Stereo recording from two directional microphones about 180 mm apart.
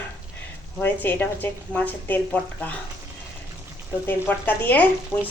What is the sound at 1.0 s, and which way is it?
A woman's voice, 10° left (ahead or behind).